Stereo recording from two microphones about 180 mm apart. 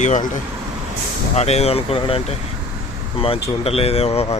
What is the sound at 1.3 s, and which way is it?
Speech, 35° left (ahead or behind).